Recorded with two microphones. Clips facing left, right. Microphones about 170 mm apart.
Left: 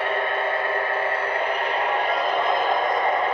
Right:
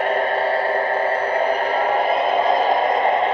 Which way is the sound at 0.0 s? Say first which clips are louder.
Right 5 dB; 40° right (ahead or behind).